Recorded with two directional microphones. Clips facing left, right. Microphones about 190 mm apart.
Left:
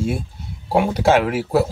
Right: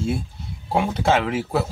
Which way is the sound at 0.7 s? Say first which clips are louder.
Left 4 dB; 5° left (ahead or behind).